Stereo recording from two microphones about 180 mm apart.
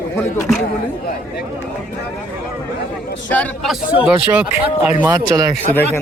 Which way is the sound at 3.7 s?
5° right (ahead or behind).